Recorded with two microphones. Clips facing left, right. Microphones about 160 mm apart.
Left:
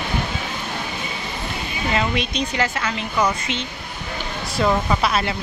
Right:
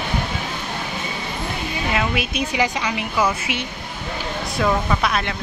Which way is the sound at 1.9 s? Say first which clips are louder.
Left 1 dB; 5° right (ahead or behind).